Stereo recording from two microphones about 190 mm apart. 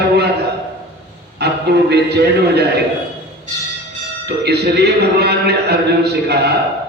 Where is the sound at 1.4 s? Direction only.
60° right (ahead or behind).